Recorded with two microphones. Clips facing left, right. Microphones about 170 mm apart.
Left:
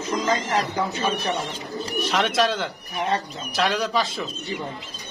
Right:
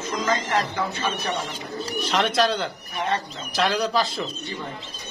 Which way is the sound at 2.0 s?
Centre (ahead or behind).